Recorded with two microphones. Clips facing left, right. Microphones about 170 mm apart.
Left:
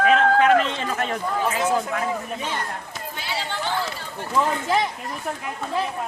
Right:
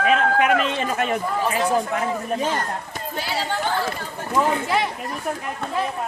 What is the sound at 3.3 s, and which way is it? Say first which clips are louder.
Chatter: right 3 dB; 50° right (ahead or behind).